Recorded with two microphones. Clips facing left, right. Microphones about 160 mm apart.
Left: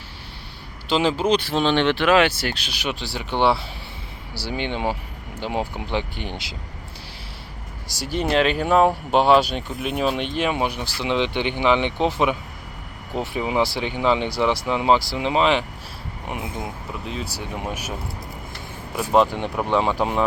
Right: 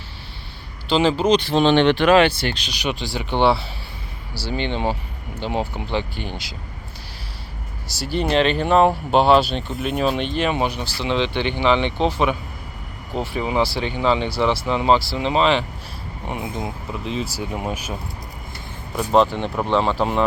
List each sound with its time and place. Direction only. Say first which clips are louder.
0.9 s speech: right 3 dB; 10° left (ahead or behind)
7.9 s speech: right 2 dB; 45° left (ahead or behind)
8.1 s speech: right 1 dB; 5° left (ahead or behind)
18.9 s speech: right 1 dB; 5° left (ahead or behind)